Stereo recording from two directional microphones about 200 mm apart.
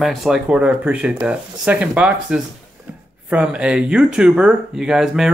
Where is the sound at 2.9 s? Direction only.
10° right (ahead or behind).